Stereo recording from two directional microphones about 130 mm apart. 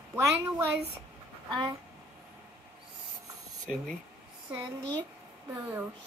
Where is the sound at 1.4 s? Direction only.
35° right (ahead or behind).